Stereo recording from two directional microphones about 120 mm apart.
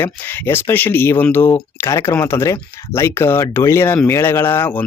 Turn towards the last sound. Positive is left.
turn(degrees=20)  # may be behind; listen again after turning